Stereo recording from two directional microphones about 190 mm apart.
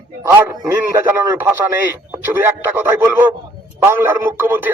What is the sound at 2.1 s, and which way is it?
Speech, 10° right (ahead or behind).